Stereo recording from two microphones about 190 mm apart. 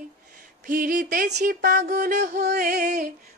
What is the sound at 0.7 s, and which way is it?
Female singing, 45° right (ahead or behind).